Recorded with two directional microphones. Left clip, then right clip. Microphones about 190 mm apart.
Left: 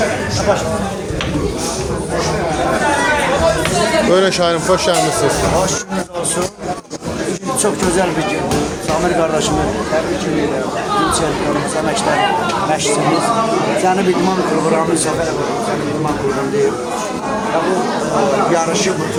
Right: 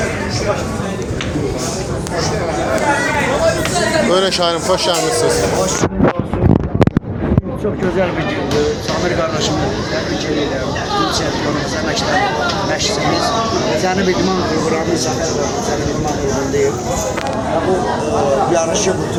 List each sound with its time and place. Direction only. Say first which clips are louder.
4.1 s speech: left 1 dB; 20° left (ahead or behind)